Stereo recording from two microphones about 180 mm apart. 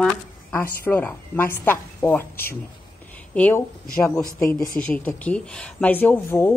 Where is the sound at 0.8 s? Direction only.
10° left (ahead or behind).